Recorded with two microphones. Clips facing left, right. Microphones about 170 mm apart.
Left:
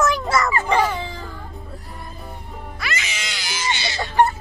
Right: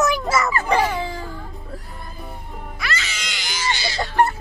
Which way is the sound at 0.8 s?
10° right (ahead or behind).